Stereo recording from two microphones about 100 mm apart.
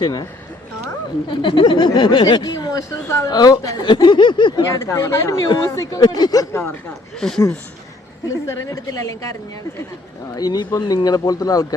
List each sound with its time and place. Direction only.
0.0 s speech: 40° left (ahead or behind)
1.3 s speech: 55° left (ahead or behind); by 3.8 s 35° left (ahead or behind)
3.8 s speech: 55° left (ahead or behind)
4.7 s speech: 30° left (ahead or behind)
7.2 s speech: 5° left (ahead or behind)
8.3 s speech: 30° left (ahead or behind)
10.3 s speech: 40° left (ahead or behind)